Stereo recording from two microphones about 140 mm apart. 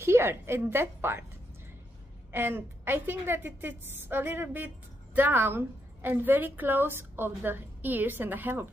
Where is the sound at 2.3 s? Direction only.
15° right (ahead or behind).